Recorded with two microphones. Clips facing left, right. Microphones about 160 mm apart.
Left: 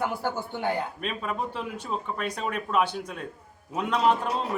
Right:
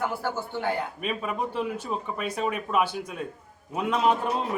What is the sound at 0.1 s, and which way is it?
Speech, 15° left (ahead or behind).